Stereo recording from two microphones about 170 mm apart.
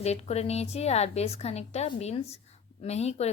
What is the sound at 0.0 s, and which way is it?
Speech, 40° left (ahead or behind).